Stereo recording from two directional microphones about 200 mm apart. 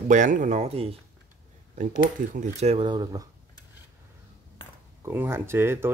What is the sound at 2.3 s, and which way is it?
Speech, 35° right (ahead or behind).